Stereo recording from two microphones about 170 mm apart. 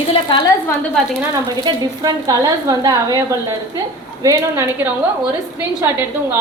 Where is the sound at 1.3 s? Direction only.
20° right (ahead or behind).